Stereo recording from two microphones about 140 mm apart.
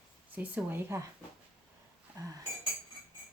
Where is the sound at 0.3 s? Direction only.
15° right (ahead or behind).